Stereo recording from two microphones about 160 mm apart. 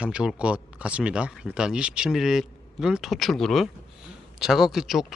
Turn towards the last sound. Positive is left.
turn(degrees=0)  # may be behind; listen again after turning